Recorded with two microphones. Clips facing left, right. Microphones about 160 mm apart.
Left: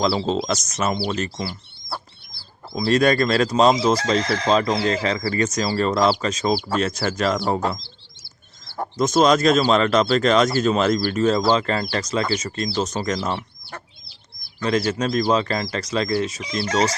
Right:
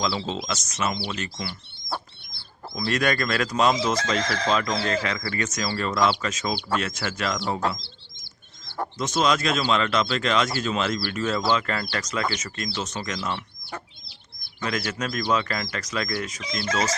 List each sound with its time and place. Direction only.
0.0 s speech: 35° left (ahead or behind)
2.7 s speech: 30° left (ahead or behind)
9.0 s speech: 40° left (ahead or behind)
14.6 s speech: 30° left (ahead or behind)